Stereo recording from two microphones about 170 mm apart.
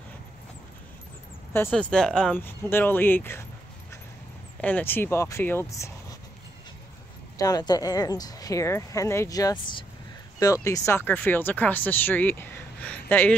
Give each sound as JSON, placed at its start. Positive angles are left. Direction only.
{"t": 1.7, "sound": "speech", "side_deg": 5}
{"t": 4.6, "sound": "speech", "side_deg": 10}
{"t": 7.3, "sound": "speech", "side_deg": 20}